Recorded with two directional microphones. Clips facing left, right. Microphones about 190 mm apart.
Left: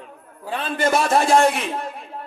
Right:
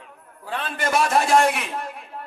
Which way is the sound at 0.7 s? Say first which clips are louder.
Left 3 dB; 25° left (ahead or behind).